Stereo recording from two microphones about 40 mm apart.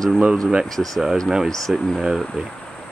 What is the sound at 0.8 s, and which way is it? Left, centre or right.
Speech, centre.